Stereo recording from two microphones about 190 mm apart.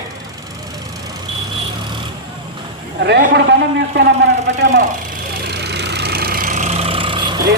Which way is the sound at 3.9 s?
65° right (ahead or behind).